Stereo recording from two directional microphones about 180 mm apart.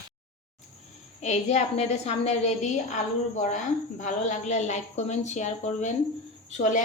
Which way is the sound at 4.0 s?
45° left (ahead or behind).